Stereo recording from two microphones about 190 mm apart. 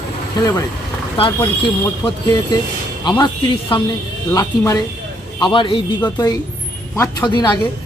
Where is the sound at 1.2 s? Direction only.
25° left (ahead or behind).